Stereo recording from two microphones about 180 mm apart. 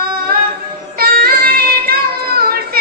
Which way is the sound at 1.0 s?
55° right (ahead or behind).